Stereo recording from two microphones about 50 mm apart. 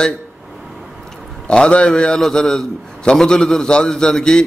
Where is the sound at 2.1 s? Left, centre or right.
Centre.